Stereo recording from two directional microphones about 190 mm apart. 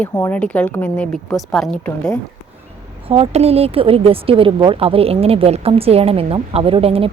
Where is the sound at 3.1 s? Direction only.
30° right (ahead or behind).